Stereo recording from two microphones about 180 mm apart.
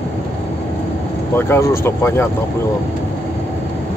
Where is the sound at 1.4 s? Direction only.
15° left (ahead or behind).